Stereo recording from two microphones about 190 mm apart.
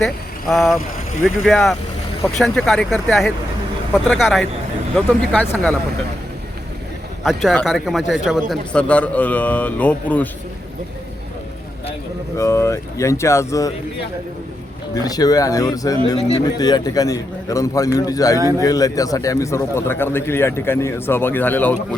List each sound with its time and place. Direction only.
0.0 s a man's voice: centre (ahead or behind)
7.3 s a man's voice: centre (ahead or behind)
12.4 s a man's voice: 15° left (ahead or behind)
14.9 s a man's voice: 20° left (ahead or behind)
18.3 s speech: 15° right (ahead or behind)
18.6 s a man's voice: 20° left (ahead or behind)